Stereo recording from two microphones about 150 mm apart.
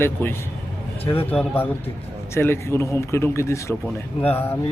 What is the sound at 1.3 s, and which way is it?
Speech, 15° left (ahead or behind).